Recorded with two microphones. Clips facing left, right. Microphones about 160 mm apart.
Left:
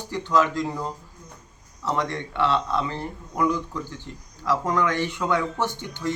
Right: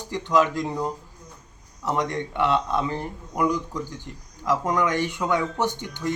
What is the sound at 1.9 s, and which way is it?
Speech, 15° right (ahead or behind).